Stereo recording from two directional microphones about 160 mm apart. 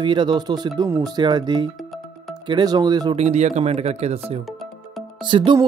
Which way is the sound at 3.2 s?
45° right (ahead or behind).